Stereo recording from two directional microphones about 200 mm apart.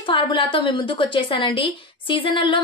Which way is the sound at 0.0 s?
25° left (ahead or behind).